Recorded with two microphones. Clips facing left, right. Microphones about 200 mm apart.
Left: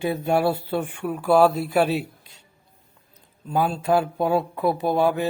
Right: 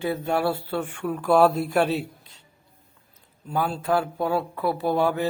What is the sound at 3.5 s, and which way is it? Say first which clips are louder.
Mantra: left 3 dB; 15° left (ahead or behind).